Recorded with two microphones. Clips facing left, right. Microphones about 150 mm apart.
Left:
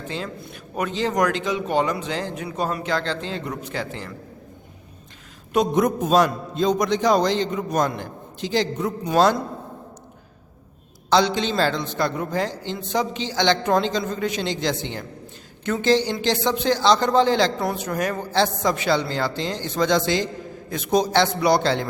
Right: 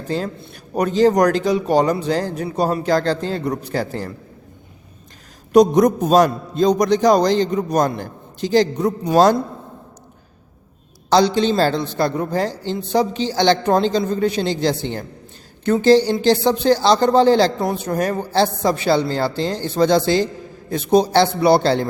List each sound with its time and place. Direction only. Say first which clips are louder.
0.3 s speech: right 6 dB; 30° right (ahead or behind)
5.5 s speech: right 7 dB; 40° right (ahead or behind)
11.1 s speech: right 5 dB; 35° right (ahead or behind)